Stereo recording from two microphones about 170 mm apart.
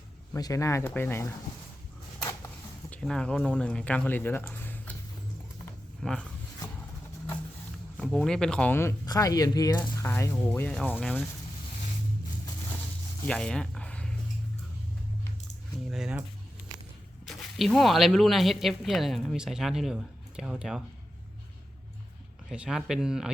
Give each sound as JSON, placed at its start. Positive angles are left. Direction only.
{"t": 0.3, "sound": "speech", "side_deg": 20}
{"t": 2.9, "sound": "speech", "side_deg": 5}
{"t": 6.0, "sound": "speech", "side_deg": 5}
{"t": 7.9, "sound": "speech", "side_deg": 5}
{"t": 13.2, "sound": "a sound", "side_deg": 5}
{"t": 15.9, "sound": "keys jangling", "side_deg": -5}
{"t": 17.2, "sound": "speech", "side_deg": 0}
{"t": 22.4, "sound": "speech", "side_deg": -5}